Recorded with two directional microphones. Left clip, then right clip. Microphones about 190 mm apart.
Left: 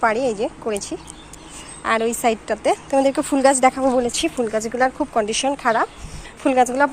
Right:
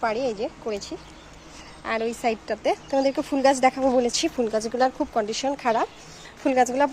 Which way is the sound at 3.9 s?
25° right (ahead or behind).